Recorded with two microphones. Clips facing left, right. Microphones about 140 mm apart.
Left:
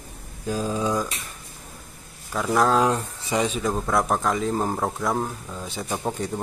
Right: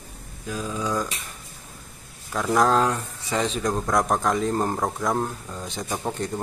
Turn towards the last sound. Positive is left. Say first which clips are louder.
# left 1 dB
turn(degrees=5)  # may be behind; listen again after turning